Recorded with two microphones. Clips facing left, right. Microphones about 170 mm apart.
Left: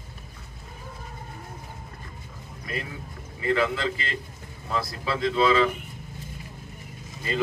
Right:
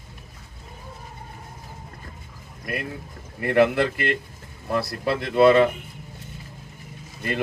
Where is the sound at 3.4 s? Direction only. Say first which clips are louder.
Right 6 dB; 65° right (ahead or behind).